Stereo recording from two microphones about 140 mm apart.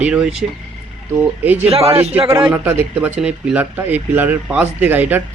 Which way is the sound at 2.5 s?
15° right (ahead or behind).